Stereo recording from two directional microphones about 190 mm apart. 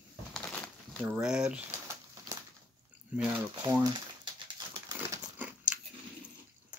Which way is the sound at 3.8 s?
25° right (ahead or behind).